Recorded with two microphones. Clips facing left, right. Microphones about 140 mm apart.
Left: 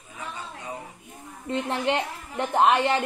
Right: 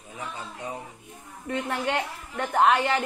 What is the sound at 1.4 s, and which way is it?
A woman's voice, 20° left (ahead or behind).